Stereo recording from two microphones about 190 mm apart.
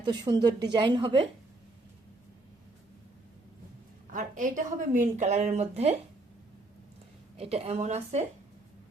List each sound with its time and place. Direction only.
0.0 s a woman's voice: 25° right (ahead or behind)
4.1 s a woman's voice: 45° right (ahead or behind)
7.3 s a woman's voice: 30° right (ahead or behind)